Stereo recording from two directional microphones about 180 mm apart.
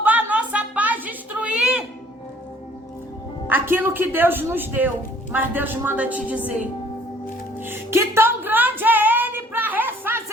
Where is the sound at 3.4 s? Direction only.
10° right (ahead or behind).